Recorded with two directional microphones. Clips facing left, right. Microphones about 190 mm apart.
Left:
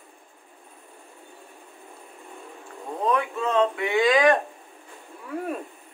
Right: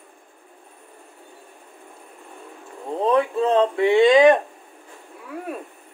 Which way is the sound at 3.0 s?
30° right (ahead or behind).